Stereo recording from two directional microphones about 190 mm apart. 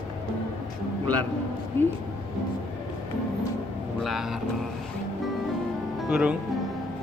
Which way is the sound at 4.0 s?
Centre (ahead or behind).